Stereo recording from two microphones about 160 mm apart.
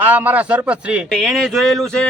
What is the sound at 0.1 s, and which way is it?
A man's voice, 10° right (ahead or behind).